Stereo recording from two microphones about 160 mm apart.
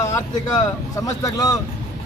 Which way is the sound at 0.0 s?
20° left (ahead or behind).